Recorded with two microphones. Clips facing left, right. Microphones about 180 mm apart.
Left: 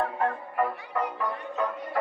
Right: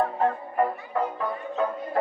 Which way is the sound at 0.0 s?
25° right (ahead or behind).